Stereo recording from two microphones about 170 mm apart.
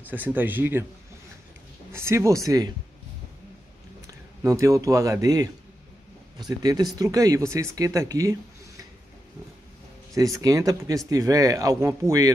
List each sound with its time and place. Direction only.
0.0 s speech: 10° right (ahead or behind)
1.9 s speech: 15° right (ahead or behind)
4.1 s a man's voice: 15° right (ahead or behind)
10.1 s speech: 20° right (ahead or behind)